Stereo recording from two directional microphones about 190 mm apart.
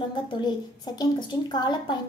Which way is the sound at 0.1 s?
25° left (ahead or behind).